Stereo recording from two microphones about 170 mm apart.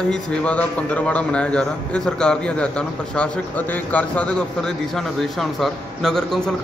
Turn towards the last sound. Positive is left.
turn(degrees=5)  # may be behind; listen again after turning